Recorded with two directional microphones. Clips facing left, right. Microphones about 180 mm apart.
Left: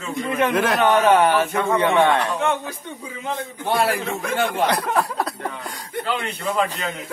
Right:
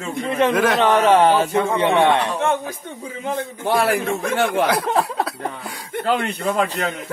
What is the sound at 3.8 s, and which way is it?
Speech, 55° right (ahead or behind).